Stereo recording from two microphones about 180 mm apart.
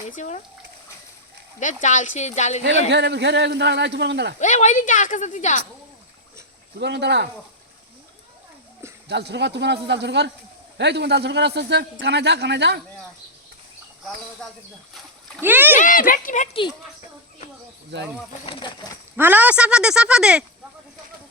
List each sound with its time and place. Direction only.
0.2 s speech: 40° left (ahead or behind)
1.5 s speech: 45° left (ahead or behind)
2.9 s a man's voice: 70° right (ahead or behind)
4.4 s a woman's voice: 40° left (ahead or behind)
6.7 s a man's voice: 70° right (ahead or behind)
9.0 s a man's voice: 70° right (ahead or behind)
15.4 s speech: 10° right (ahead or behind)
15.8 s a woman's voice: 50° left (ahead or behind)
18.4 s speech: 25° left (ahead or behind)
19.1 s speech: 10° right (ahead or behind)